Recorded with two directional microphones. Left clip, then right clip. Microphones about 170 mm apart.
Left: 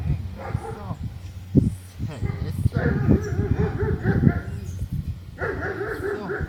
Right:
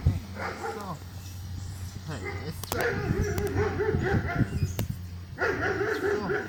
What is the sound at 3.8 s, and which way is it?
Dog, 25° left (ahead or behind).